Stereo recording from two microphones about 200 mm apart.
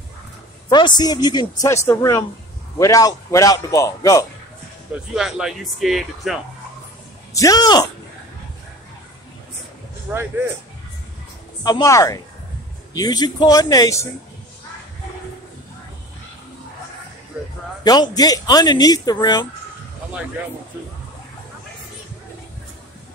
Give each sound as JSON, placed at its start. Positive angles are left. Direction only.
{"t": 0.7, "sound": "a man's voice", "side_deg": 20}
{"t": 5.1, "sound": "speech", "side_deg": 0}
{"t": 7.3, "sound": "speech", "side_deg": 20}
{"t": 10.1, "sound": "speech", "side_deg": -10}
{"t": 11.6, "sound": "a man's voice", "side_deg": 20}
{"t": 17.8, "sound": "speech", "side_deg": 20}